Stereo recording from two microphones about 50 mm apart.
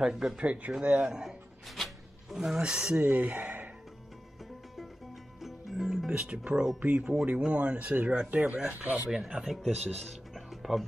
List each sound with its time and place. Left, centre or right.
0.0 s speech: centre
0.4 s speech: right
1.7 s music: centre
2.3 s speech: centre
3.0 s speech: right
3.4 s music: right
5.4 s music: centre
6.4 s speech: centre
6.8 s speech: right
9.1 s speech: centre
9.6 s speech: centre